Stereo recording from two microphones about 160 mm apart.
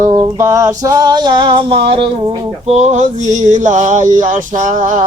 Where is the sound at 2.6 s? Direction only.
45° right (ahead or behind).